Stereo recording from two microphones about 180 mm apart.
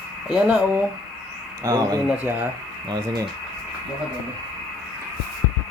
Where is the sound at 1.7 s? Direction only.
20° right (ahead or behind).